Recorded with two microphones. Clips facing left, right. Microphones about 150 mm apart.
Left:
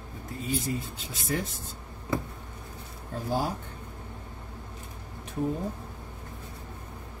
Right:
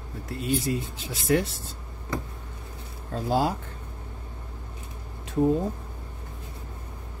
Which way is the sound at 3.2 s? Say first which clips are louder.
Right 5 dB; 80° right.